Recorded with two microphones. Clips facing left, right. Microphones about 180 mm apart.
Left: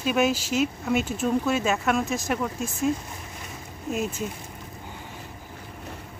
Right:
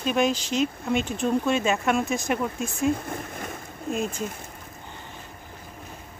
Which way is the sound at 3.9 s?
5° left (ahead or behind).